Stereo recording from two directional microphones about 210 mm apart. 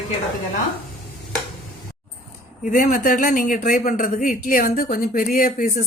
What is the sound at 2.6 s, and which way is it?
Speech, 40° left (ahead or behind).